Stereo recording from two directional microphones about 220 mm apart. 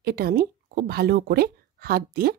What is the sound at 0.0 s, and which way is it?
A woman's voice, 45° right (ahead or behind).